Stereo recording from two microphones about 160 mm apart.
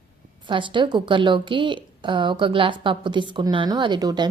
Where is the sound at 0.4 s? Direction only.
30° right (ahead or behind).